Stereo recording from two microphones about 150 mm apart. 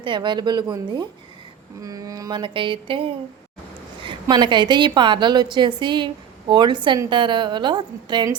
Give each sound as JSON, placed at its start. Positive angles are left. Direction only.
{"t": 0.0, "sound": "a woman's voice", "side_deg": -30}